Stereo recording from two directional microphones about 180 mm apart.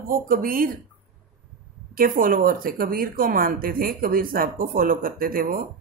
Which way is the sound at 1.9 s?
50° right (ahead or behind).